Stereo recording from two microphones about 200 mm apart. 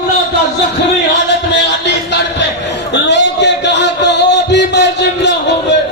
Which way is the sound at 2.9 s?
60° left (ahead or behind).